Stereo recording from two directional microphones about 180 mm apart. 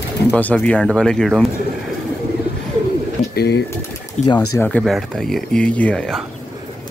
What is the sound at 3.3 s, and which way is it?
Speech, 65° left (ahead or behind).